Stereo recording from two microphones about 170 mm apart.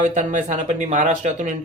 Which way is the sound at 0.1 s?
50° right (ahead or behind).